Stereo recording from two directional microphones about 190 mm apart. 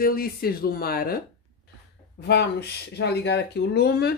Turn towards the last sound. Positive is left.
turn(degrees=60)  # may be behind; listen again after turning